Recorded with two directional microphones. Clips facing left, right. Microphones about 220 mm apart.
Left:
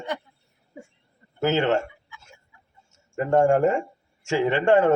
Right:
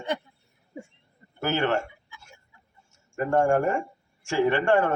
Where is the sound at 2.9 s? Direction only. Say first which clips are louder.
Left 3 dB; 20° left (ahead or behind).